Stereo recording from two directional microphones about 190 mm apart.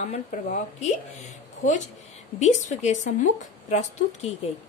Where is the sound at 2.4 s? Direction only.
40° left (ahead or behind).